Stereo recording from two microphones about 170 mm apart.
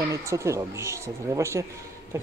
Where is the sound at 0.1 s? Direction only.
15° right (ahead or behind).